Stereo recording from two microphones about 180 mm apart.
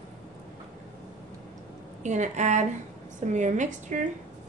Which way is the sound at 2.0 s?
40° right (ahead or behind).